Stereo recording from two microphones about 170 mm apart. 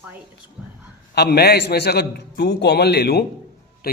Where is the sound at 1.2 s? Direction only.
70° left (ahead or behind).